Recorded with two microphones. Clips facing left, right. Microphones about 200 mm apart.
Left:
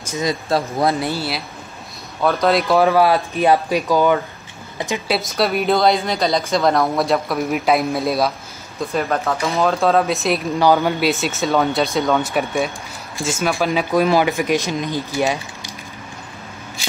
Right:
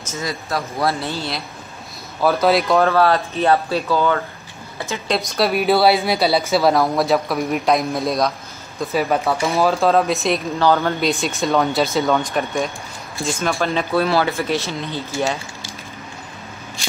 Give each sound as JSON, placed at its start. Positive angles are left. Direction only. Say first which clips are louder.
{"t": 0.1, "sound": "speech", "louder": "left 5 dB", "side_deg": 20}
{"t": 2.2, "sound": "speech", "louder": "even", "side_deg": 0}
{"t": 2.8, "sound": "speech", "louder": "left 1 dB", "side_deg": 10}
{"t": 5.1, "sound": "speech", "louder": "right 1 dB", "side_deg": 0}
{"t": 8.9, "sound": "speech", "louder": "right 2 dB", "side_deg": -10}
{"t": 10.6, "sound": "speech", "louder": "left 2 dB", "side_deg": 10}